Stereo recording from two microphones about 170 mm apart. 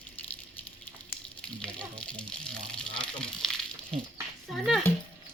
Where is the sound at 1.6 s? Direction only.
5° left (ahead or behind).